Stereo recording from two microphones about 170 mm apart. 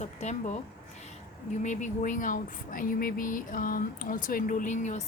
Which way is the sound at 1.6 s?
45° left (ahead or behind).